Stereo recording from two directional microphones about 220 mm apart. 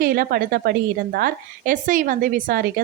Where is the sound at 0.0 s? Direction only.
40° right (ahead or behind).